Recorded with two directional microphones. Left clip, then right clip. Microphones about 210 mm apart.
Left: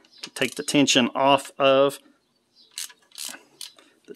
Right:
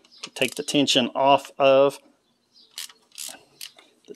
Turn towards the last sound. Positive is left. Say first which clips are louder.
# even
turn(degrees=10)  # may be behind; listen again after turning